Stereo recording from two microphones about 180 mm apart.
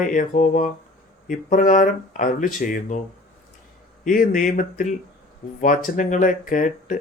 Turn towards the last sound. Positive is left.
turn(degrees=45)  # may be behind; listen again after turning